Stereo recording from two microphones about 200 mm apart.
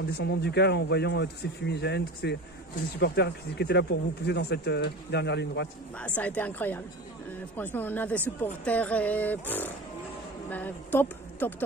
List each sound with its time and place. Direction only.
0.2 s speech: 55° left (ahead or behind)
5.9 s a woman's voice: 10° left (ahead or behind)